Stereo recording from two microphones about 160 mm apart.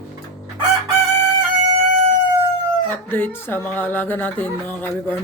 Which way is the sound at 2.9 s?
10° left (ahead or behind).